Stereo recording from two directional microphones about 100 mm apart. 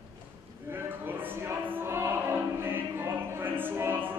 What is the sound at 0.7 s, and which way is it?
Choir, 20° right (ahead or behind).